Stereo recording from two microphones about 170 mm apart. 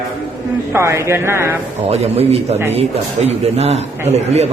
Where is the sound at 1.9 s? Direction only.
40° right (ahead or behind).